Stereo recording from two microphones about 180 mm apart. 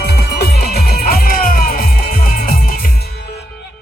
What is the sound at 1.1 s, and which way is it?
Music, 55° left (ahead or behind).